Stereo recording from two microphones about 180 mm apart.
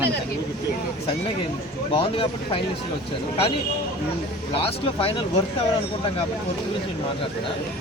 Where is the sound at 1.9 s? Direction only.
30° left (ahead or behind).